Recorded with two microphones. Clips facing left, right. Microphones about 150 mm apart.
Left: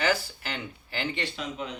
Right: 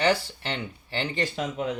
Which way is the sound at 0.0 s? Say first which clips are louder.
Right 3 dB; 30° right (ahead or behind).